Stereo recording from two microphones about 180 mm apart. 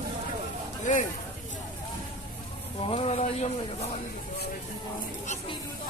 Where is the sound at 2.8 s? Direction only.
30° left (ahead or behind).